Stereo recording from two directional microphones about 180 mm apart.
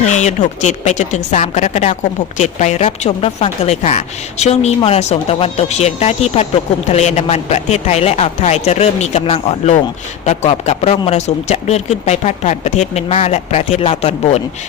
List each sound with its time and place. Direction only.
0.0 s speech: 40° left (ahead or behind)